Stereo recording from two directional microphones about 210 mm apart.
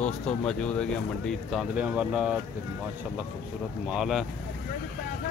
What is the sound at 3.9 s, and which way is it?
Speech, centre (ahead or behind).